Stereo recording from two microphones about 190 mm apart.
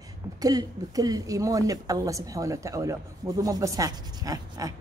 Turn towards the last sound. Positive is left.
turn(degrees=-20)  # may be behind; listen again after turning